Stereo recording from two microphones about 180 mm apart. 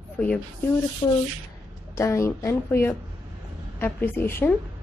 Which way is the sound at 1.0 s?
20° left (ahead or behind).